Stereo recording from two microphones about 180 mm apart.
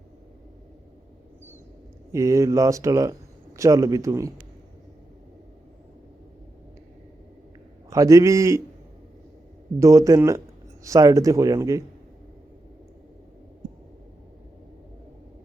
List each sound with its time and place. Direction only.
2.1 s speech: 15° right (ahead or behind)
7.9 s speech: 20° right (ahead or behind)
9.8 s speech: 15° right (ahead or behind)